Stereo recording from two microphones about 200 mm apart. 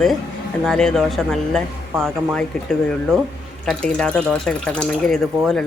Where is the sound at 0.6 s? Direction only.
5° left (ahead or behind).